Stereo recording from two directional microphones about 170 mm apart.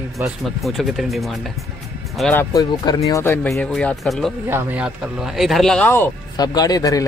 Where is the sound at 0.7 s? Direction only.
Centre (ahead or behind).